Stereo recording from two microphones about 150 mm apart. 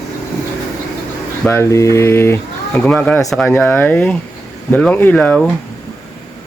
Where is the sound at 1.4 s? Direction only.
15° left (ahead or behind).